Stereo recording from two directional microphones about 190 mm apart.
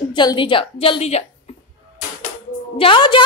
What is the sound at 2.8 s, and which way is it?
Speech, 25° left (ahead or behind).